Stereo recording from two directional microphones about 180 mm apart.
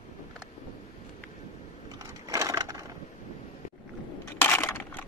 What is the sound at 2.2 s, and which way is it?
Crushing, 20° right (ahead or behind).